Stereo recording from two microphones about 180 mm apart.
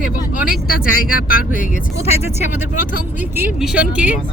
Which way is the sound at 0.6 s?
55° left (ahead or behind).